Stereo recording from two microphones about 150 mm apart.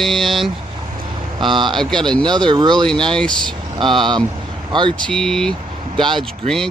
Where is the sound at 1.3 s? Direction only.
30° right (ahead or behind).